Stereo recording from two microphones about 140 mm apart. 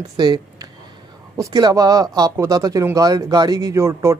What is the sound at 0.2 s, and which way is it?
Speech, 30° right (ahead or behind).